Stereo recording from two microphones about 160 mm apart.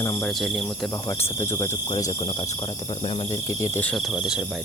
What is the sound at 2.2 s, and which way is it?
Cricket, 35° left (ahead or behind).